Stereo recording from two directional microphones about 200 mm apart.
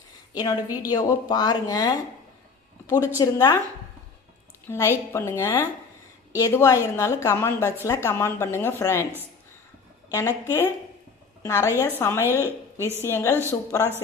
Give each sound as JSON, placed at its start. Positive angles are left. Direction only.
{"t": 0.8, "sound": "speech", "side_deg": 20}
{"t": 3.2, "sound": "speech", "side_deg": 20}
{"t": 4.7, "sound": "speech", "side_deg": 15}
{"t": 10.1, "sound": "speech", "side_deg": 15}